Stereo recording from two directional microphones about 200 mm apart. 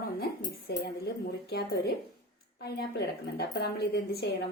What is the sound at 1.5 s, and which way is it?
A woman's voice, 55° left (ahead or behind).